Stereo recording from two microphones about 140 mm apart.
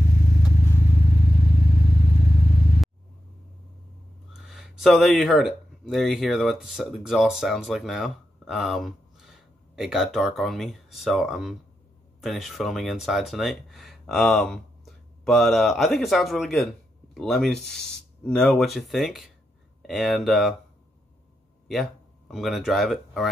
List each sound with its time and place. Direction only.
0.0 s vehicle: 80° left
4.4 s speech: centre (ahead or behind)
22.3 s speech: centre (ahead or behind)